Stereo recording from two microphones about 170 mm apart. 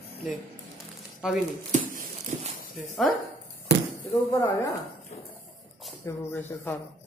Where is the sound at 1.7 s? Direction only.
50° right (ahead or behind).